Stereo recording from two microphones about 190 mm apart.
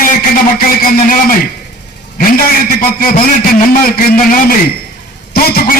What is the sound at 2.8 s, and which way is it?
A man's voice, 50° left (ahead or behind).